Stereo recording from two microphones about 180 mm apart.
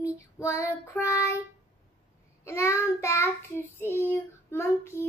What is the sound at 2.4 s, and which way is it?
Child singing, 15° left (ahead or behind).